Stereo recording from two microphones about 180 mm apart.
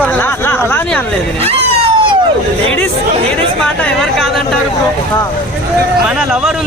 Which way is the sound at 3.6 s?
5° left (ahead or behind).